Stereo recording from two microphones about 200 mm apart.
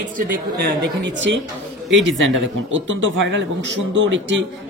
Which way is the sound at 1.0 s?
65° right (ahead or behind).